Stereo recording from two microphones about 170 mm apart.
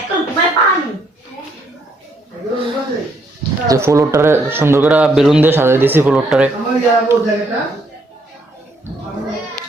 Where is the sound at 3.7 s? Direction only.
15° right (ahead or behind).